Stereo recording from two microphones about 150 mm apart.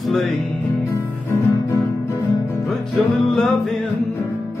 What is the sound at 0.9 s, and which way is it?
Music, 20° left (ahead or behind).